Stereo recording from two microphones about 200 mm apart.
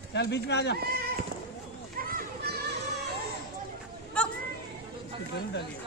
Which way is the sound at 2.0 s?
45° right (ahead or behind).